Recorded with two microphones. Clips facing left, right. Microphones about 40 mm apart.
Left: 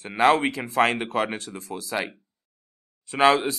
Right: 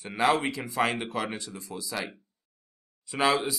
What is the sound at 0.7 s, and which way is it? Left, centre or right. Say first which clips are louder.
Speech: left 7 dB; left.